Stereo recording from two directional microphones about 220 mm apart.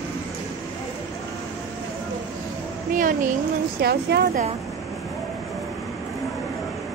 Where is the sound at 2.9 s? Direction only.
35° right (ahead or behind).